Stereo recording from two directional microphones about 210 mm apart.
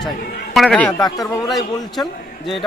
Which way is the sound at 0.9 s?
20° left (ahead or behind).